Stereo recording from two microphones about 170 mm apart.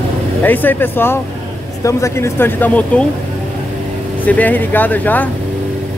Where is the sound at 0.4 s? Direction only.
10° left (ahead or behind).